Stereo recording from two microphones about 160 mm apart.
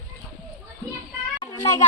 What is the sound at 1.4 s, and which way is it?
Children playing, 25° left (ahead or behind).